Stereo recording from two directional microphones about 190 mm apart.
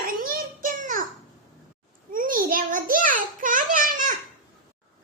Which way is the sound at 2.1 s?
45° right (ahead or behind).